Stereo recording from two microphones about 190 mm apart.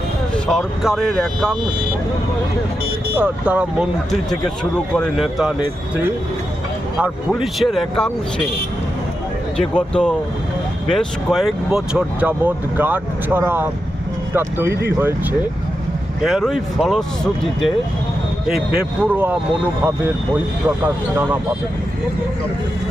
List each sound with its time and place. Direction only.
0.3 s speech: centre (ahead or behind)
3.2 s speech: 5° right (ahead or behind)
7.0 s speech: centre (ahead or behind)
9.6 s speech: 5° left (ahead or behind); by 13.7 s 10° right (ahead or behind)
14.7 s speech: 55° right (ahead or behind)
14.9 s speech: 10° right (ahead or behind)
18.5 s speech: 5° right (ahead or behind)